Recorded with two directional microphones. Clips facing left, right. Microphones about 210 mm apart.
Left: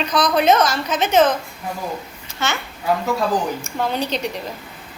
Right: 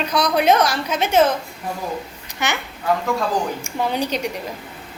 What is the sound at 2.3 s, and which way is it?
Speech, 15° right (ahead or behind).